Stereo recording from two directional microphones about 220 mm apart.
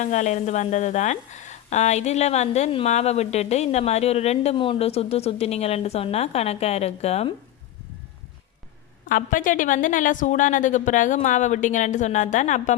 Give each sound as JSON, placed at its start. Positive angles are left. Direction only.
{"t": 0.0, "sound": "a woman's voice", "side_deg": 35}
{"t": 9.0, "sound": "a woman's voice", "side_deg": 35}